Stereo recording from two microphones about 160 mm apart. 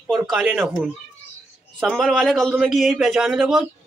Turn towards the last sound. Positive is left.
turn(degrees=0)  # may be behind; listen again after turning